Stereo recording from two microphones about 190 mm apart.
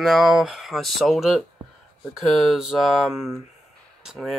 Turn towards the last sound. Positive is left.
turn(degrees=0)  # may be behind; listen again after turning